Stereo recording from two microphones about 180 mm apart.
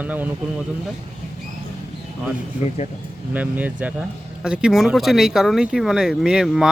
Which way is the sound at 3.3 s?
10° right (ahead or behind).